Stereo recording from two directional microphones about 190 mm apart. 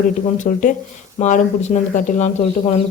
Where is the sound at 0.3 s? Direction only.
45° left (ahead or behind).